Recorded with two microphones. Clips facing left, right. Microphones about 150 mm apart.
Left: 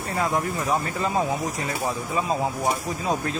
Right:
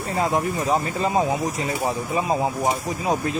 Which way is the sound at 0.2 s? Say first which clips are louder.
Right 3 dB; 20° right (ahead or behind).